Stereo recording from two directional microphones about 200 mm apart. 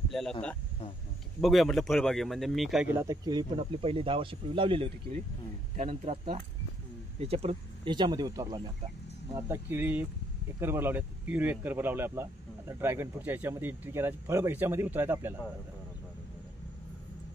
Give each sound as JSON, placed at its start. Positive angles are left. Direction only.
{"t": 0.1, "sound": "a man's voice", "side_deg": 0}